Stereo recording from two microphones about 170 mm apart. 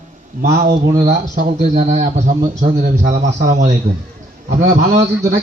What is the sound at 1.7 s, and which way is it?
A man's voice, 45° right (ahead or behind).